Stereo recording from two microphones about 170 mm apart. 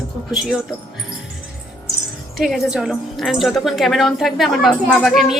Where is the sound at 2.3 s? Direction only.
Centre (ahead or behind).